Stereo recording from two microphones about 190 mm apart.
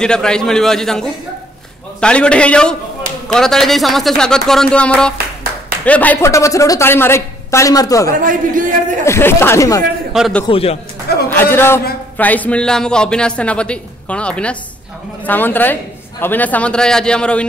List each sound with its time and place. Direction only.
0.0 s a man's voice: 5° left (ahead or behind)
5.1 s clapping: 55° right (ahead or behind)
5.9 s a woman's voice: 10° left (ahead or behind)
8.2 s speech: 45° right (ahead or behind)
9.0 s a woman's voice: 15° left (ahead or behind)
10.1 s a man's voice: centre (ahead or behind)
10.5 s speech: 30° left (ahead or behind)
11.2 s a man's voice: 10° left (ahead or behind)